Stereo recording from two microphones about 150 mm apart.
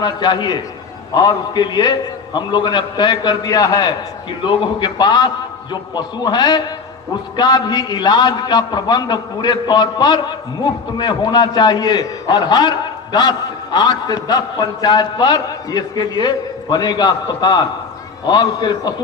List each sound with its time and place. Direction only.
0.0 s a man's voice: 30° left (ahead or behind)